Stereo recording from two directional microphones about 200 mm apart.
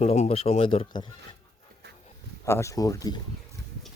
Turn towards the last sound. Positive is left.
turn(degrees=20)  # may be behind; listen again after turning